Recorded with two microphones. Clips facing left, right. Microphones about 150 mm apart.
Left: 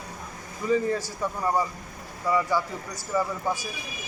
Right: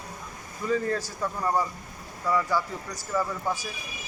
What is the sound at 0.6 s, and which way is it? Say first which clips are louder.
Speech: left 2 dB; 15° left (ahead or behind).